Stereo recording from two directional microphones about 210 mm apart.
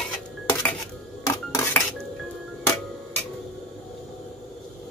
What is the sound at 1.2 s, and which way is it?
Cutlery, 15° left (ahead or behind).